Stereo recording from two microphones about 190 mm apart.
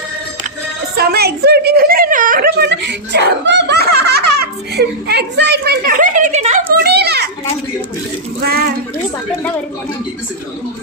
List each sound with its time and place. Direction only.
0.9 s a woman's voice: 55° right (ahead or behind); by 6.6 s 35° right (ahead or behind)
6.8 s children playing: 60° right (ahead or behind)
8.4 s a woman's voice: 55° right (ahead or behind)